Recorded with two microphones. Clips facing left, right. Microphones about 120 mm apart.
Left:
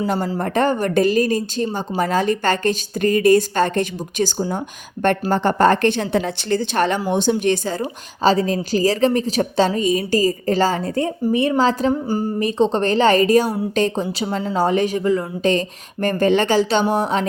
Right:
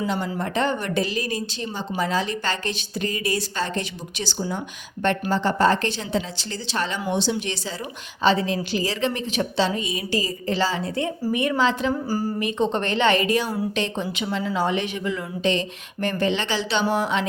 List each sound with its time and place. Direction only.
0.3 s a woman's voice: 50° left (ahead or behind)
7.8 s a woman's voice: 40° left (ahead or behind)
11.2 s a woman's voice: 30° left (ahead or behind)
12.0 s speech: 25° left (ahead or behind)
12.4 s a woman's voice: 35° left (ahead or behind)
16.8 s speech: 30° left (ahead or behind)